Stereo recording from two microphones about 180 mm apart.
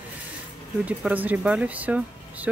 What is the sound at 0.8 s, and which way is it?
Speech, 10° right (ahead or behind).